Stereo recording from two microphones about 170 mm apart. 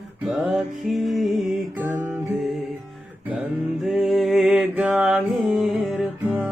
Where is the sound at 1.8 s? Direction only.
10° right (ahead or behind).